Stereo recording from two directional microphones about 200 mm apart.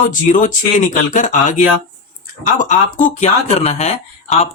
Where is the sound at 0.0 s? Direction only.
40° left (ahead or behind).